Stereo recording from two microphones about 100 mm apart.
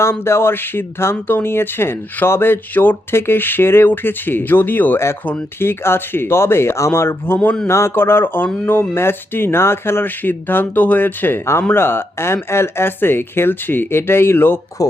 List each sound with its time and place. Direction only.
0.0 s speech: 25° left (ahead or behind)
7.3 s speech: 5° left (ahead or behind)
7.7 s speech: 25° left (ahead or behind)
14.8 s speech: 35° left (ahead or behind)